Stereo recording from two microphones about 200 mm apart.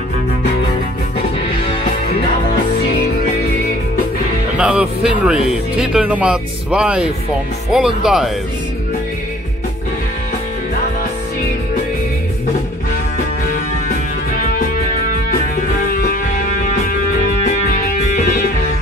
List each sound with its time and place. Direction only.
4.6 s speech: 5° right (ahead or behind)
16.1 s music: 40° left (ahead or behind)